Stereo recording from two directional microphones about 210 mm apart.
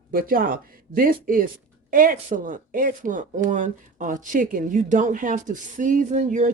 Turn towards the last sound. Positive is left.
turn(degrees=-35)  # may be behind; listen again after turning